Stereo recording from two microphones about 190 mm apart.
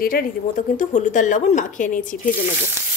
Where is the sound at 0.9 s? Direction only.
40° left (ahead or behind).